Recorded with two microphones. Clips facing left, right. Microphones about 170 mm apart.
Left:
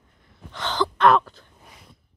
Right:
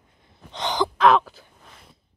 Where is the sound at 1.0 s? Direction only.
Centre (ahead or behind).